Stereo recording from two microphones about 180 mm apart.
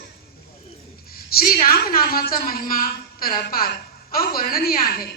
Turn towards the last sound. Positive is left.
turn(degrees=55)  # may be behind; listen again after turning